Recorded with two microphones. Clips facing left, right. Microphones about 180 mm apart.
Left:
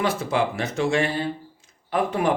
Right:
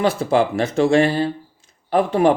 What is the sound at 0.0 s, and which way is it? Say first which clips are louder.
Speech: right 6 dB; 30° right (ahead or behind).